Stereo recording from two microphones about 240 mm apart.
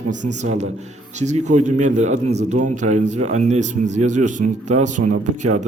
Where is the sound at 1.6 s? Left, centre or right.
Right.